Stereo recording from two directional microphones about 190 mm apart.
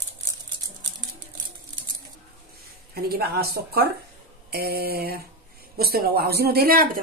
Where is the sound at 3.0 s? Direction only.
55° right (ahead or behind).